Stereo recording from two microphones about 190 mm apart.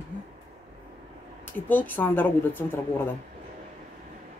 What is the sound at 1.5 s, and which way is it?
Speech, 10° left (ahead or behind).